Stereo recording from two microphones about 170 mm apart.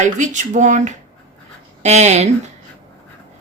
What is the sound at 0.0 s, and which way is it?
Speech, 45° right (ahead or behind).